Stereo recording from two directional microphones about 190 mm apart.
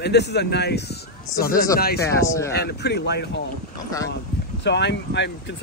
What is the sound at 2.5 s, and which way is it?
Speech, 60° left (ahead or behind).